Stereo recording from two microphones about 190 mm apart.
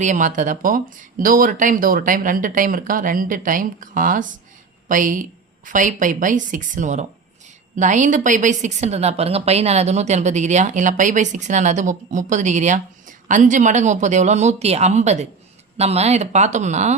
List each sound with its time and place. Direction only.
0.0 s a woman's voice: 40° right (ahead or behind)